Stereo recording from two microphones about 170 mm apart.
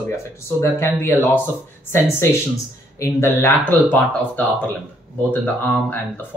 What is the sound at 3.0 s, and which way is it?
Speech, 15° left (ahead or behind).